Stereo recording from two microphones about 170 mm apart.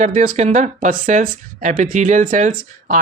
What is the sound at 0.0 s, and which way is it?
Speech, 45° right (ahead or behind).